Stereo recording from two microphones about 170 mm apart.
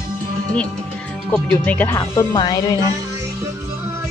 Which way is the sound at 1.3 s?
10° left (ahead or behind).